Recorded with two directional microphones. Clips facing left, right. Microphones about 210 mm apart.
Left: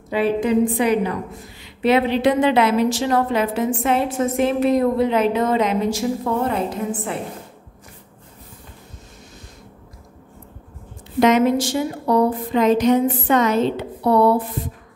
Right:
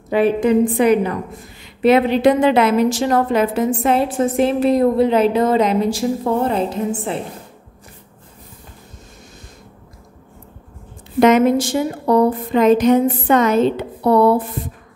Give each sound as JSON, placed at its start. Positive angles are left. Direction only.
{"t": 0.1, "sound": "a woman's voice", "side_deg": -50}
{"t": 11.1, "sound": "a woman's voice", "side_deg": -50}